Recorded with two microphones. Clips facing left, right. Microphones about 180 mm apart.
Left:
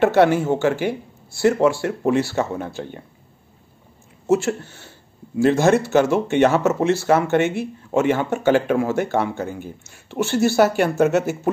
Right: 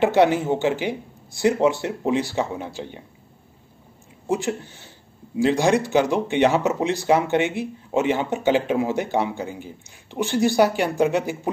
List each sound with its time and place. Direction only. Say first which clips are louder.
0.0 s speech: left 2 dB; 15° right (ahead or behind)
2.7 s speech: left 2 dB; 50° left (ahead or behind)
4.3 s speech: left 5 dB; 15° right (ahead or behind)